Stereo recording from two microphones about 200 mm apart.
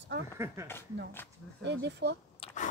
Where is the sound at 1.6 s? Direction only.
55° right (ahead or behind).